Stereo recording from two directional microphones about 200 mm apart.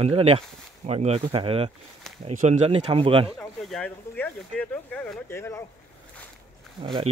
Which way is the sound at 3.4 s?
5° left (ahead or behind).